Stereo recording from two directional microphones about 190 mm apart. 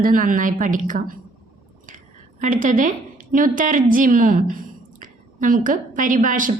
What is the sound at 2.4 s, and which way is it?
A woman's voice, 45° right (ahead or behind).